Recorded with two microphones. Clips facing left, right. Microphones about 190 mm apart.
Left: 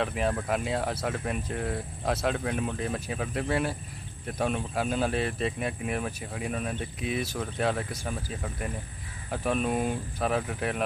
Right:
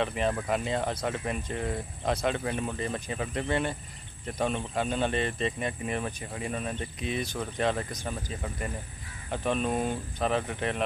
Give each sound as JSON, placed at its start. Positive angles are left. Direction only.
{"t": 0.0, "sound": "speech", "side_deg": 0}